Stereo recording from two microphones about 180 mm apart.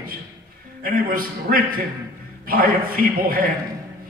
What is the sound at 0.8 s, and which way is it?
A man's voice, 55° right (ahead or behind).